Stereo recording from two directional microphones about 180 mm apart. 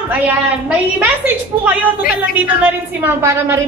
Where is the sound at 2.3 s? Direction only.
10° right (ahead or behind).